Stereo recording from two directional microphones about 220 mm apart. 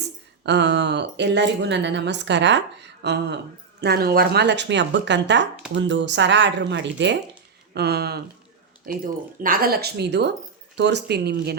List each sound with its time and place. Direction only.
0.4 s speech: 50° right (ahead or behind)